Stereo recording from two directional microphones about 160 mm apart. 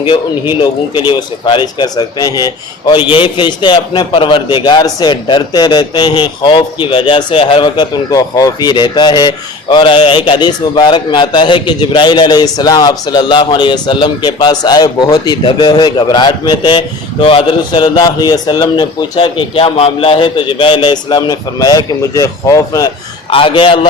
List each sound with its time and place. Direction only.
0.6 s a man's voice: 30° left (ahead or behind)
23.3 s a man's voice: 35° left (ahead or behind)